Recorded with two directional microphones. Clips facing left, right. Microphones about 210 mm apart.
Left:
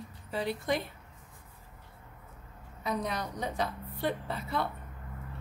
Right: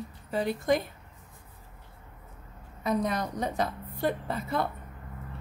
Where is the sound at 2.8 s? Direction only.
45° right (ahead or behind).